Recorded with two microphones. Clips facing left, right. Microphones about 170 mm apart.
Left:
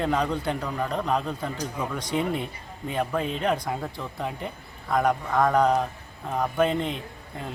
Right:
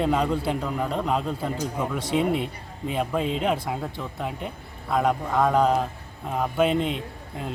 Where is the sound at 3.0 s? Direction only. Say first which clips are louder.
Even; 15° right (ahead or behind).